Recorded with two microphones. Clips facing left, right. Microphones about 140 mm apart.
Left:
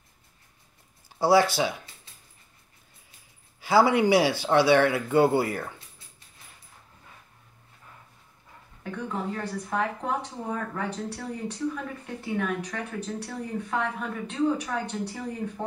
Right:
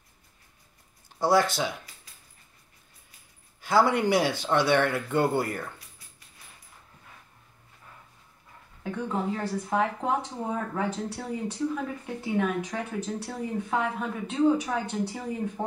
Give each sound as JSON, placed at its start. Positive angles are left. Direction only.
{"t": 1.2, "sound": "speech", "side_deg": 5}
{"t": 2.1, "sound": "a sound", "side_deg": 25}
{"t": 3.6, "sound": "speech", "side_deg": 5}
{"t": 8.9, "sound": "speech", "side_deg": -10}